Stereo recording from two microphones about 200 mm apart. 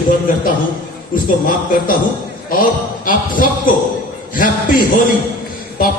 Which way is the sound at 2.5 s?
45° left (ahead or behind).